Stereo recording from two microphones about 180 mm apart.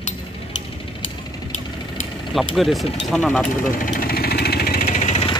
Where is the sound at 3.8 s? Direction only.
55° left (ahead or behind); by 5.3 s 35° left (ahead or behind).